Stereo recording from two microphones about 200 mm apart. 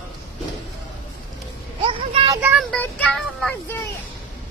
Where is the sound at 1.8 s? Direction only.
25° right (ahead or behind).